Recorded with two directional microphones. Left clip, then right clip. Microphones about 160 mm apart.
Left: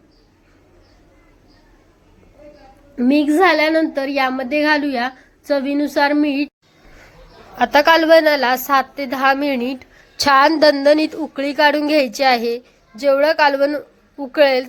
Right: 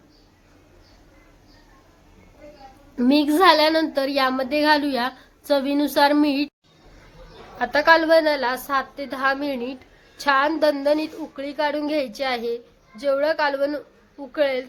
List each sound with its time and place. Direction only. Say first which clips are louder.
2.9 s a woman's voice: left 4 dB; 5° left (ahead or behind)
7.6 s a woman's voice: left 4 dB; 30° left (ahead or behind)
10.2 s a woman's voice: left 7 dB; 40° left (ahead or behind)
10.8 s a woman's voice: left 8 dB; 30° left (ahead or behind)